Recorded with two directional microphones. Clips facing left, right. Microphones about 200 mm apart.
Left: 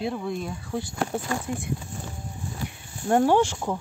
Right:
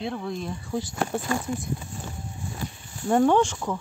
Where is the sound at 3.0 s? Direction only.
5° left (ahead or behind).